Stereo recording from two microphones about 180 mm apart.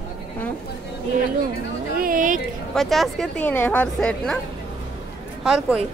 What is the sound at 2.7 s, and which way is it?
A woman's voice, centre (ahead or behind).